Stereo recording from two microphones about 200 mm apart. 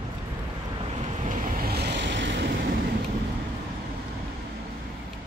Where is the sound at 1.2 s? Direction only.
40° right (ahead or behind); by 2.5 s 60° right (ahead or behind).